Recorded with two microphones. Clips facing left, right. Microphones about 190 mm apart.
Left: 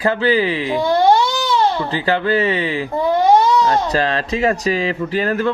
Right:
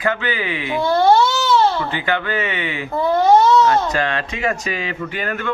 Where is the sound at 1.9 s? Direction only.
35° left (ahead or behind).